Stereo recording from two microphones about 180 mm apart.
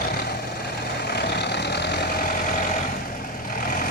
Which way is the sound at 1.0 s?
65° left (ahead or behind).